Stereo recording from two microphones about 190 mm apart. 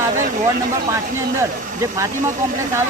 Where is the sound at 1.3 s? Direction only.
15° right (ahead or behind).